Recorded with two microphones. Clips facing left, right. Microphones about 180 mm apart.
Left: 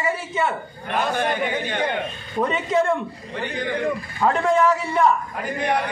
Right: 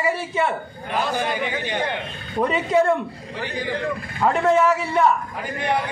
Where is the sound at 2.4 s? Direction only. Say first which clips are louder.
Right 2 dB; 10° right (ahead or behind).